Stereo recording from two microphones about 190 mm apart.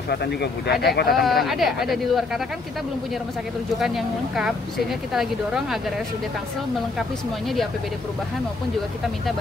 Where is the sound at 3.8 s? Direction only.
Centre (ahead or behind).